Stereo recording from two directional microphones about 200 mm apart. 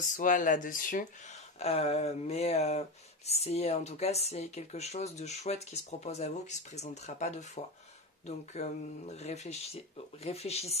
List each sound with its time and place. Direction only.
0.2 s speech: 40° left (ahead or behind)